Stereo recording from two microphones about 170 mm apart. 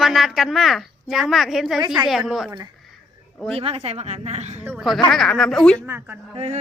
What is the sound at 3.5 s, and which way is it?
A woman's voice, 35° right (ahead or behind).